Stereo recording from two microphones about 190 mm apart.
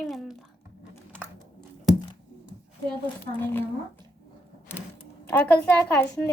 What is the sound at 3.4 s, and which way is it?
Speech, 10° left (ahead or behind).